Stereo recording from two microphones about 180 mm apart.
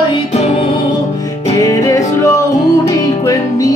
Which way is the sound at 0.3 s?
40° left (ahead or behind).